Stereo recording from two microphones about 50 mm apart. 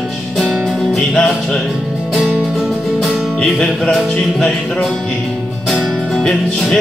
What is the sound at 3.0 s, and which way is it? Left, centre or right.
Music, centre.